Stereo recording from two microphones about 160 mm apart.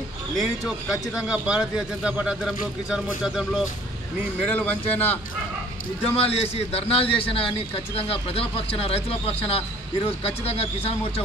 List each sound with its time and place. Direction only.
1.1 s speech: 5° right (ahead or behind)
4.5 s speech: 10° left (ahead or behind)
6.1 s a man's voice: 40° left (ahead or behind)